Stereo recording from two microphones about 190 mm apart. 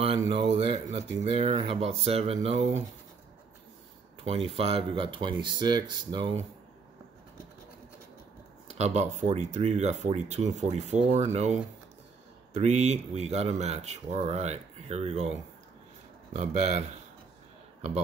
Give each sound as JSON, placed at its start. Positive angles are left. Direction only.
{"t": 0.6, "sound": "speech", "side_deg": -35}
{"t": 4.5, "sound": "speech", "side_deg": -30}
{"t": 8.6, "sound": "speech", "side_deg": -35}
{"t": 16.3, "sound": "speech", "side_deg": -35}